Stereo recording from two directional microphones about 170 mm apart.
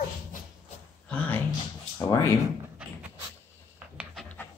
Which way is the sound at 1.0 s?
10° left (ahead or behind).